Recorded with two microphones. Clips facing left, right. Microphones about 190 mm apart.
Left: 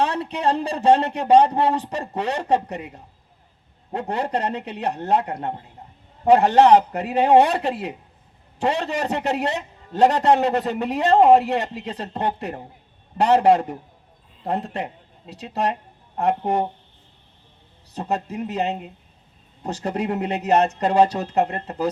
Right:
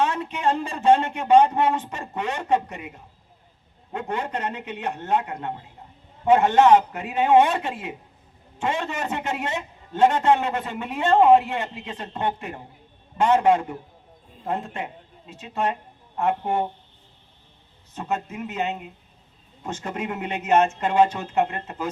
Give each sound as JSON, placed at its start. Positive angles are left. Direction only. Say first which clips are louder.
{"t": 0.0, "sound": "a man's voice", "louder": "left 1 dB", "side_deg": 35}
{"t": 17.9, "sound": "a man's voice", "louder": "left 3 dB", "side_deg": 35}